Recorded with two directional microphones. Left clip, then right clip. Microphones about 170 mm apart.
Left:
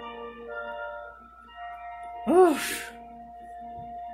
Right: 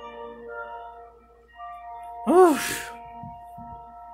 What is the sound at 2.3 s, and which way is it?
Music, 25° right (ahead or behind).